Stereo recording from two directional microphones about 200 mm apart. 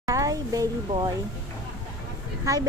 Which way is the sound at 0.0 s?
15° right (ahead or behind).